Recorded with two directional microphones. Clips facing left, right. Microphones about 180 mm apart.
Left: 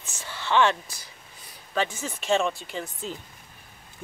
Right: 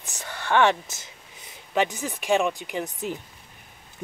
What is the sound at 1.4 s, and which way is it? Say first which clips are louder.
Speech: right 3 dB; 15° right (ahead or behind).